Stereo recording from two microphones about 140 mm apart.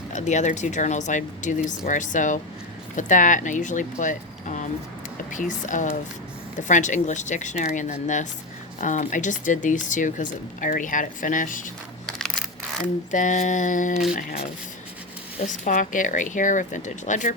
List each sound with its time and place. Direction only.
0.1 s speech: 60° left (ahead or behind)
13.1 s speech: 65° left (ahead or behind)
14.1 s speech: 80° left
15.4 s speech: 65° left (ahead or behind)